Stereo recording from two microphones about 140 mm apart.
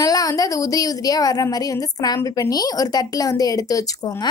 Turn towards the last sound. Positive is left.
turn(degrees=25)  # may be behind; listen again after turning